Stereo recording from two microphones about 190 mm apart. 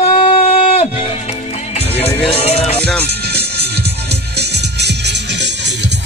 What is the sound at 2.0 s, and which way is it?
Speech, 30° left (ahead or behind).